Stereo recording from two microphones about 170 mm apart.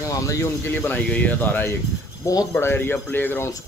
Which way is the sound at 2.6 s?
10° left (ahead or behind).